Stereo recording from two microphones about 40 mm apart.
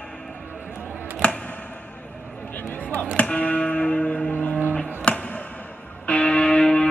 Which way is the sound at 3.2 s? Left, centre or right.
Left.